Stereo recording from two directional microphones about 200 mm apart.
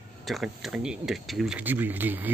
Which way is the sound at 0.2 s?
Centre (ahead or behind).